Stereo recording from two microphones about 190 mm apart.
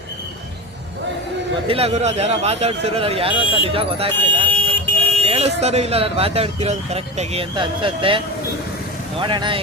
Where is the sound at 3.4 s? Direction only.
30° left (ahead or behind).